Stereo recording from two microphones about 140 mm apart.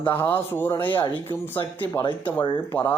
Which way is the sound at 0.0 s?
15° left (ahead or behind).